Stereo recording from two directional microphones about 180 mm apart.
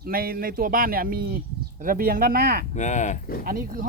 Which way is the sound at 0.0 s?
55° right (ahead or behind).